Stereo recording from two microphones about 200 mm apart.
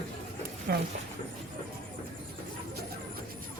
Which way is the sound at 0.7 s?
55° right (ahead or behind).